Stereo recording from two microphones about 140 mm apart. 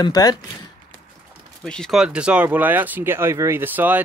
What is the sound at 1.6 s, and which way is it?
Speech, 5° left (ahead or behind).